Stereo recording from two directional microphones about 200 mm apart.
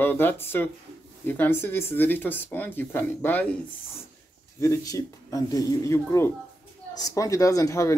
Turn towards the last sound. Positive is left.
turn(degrees=15)  # may be behind; listen again after turning